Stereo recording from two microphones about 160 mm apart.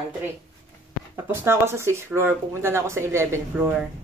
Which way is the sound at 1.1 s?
15° right (ahead or behind).